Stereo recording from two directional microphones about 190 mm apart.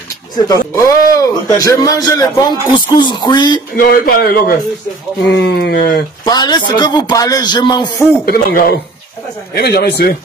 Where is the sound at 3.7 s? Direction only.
50° left (ahead or behind).